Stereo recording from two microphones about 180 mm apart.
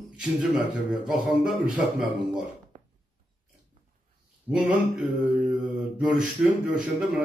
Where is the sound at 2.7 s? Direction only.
45° right (ahead or behind).